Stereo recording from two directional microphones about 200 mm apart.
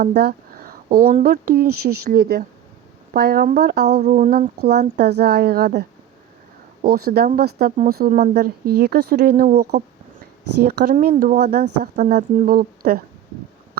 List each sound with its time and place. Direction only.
0.0 s a sound: 55° right (ahead or behind)
1.2 s speech: 50° right (ahead or behind)
4.0 s speech: 40° right (ahead or behind)
6.8 s speech: 50° right (ahead or behind)
9.7 s a sound: 50° right (ahead or behind)
10.9 s speech: 40° right (ahead or behind)